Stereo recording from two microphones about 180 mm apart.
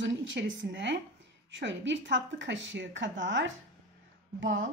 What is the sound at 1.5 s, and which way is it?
A woman's voice, 90° right.